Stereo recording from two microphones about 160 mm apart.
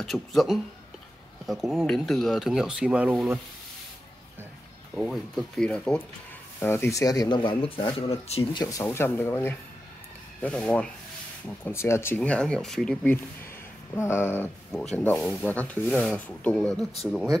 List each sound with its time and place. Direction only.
0.0 s speech: centre (ahead or behind)
4.9 s speech: centre (ahead or behind); by 8.6 s 35° left (ahead or behind)
8.6 s speech: 20° left (ahead or behind)
14.7 s speech: 5° left (ahead or behind)